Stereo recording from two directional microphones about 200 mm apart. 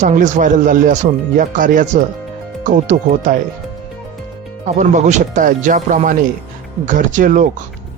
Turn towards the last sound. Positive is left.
turn(degrees=-40)  # may be behind; listen again after turning